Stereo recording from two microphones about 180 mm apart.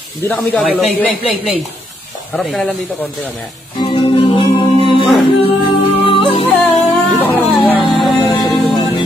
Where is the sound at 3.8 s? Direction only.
25° left (ahead or behind).